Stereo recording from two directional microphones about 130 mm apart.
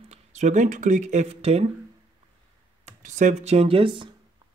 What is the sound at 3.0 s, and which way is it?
Speech, 70° right (ahead or behind).